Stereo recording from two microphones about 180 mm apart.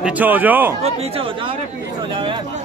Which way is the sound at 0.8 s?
35° right (ahead or behind).